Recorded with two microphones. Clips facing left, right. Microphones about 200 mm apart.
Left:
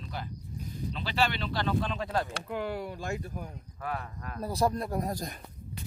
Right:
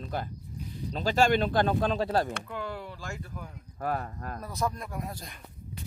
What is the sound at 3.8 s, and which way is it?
Speech, 40° right (ahead or behind).